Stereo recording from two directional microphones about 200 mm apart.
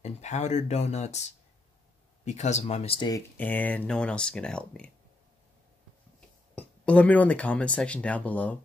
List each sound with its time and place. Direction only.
0.0 s speech: 35° left (ahead or behind); by 4.9 s 5° left (ahead or behind)
6.5 s speech: 5° left (ahead or behind)